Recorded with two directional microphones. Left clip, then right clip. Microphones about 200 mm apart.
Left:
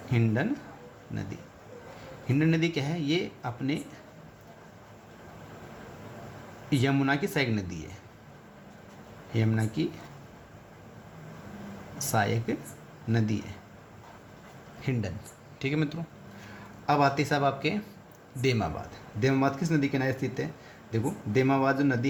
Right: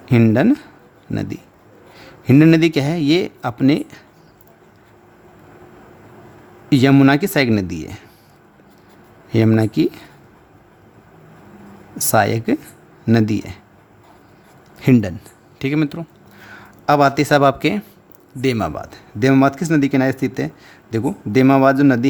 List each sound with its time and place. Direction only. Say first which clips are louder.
0.1 s a man's voice: right 15 dB; 55° right (ahead or behind)
2.2 s a man's voice: right 15 dB; 55° right (ahead or behind)
6.7 s a man's voice: right 14 dB; 55° right (ahead or behind)
9.3 s a man's voice: right 15 dB; 55° right (ahead or behind)
12.1 s a man's voice: right 13 dB; 55° right (ahead or behind)
14.8 s speech: right 18 dB; 55° right (ahead or behind)
15.5 s speech: right 11 dB; 40° right (ahead or behind)
16.8 s a man's voice: right 11 dB; 55° right (ahead or behind)